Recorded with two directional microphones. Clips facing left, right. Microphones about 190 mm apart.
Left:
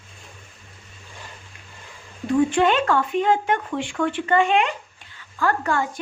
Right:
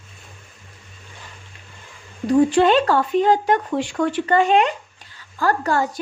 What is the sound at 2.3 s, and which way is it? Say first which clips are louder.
Speech: right 4 dB; 35° right (ahead or behind).